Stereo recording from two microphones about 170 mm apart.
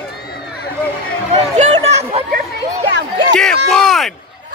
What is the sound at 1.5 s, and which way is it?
Chatter, 45° right (ahead or behind).